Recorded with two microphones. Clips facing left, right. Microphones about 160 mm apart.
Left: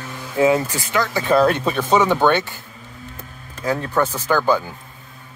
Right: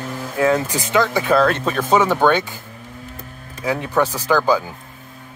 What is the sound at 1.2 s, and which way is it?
Speech, 5° left (ahead or behind).